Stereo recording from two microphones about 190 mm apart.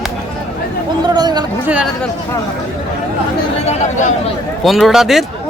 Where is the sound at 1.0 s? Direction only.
20° right (ahead or behind).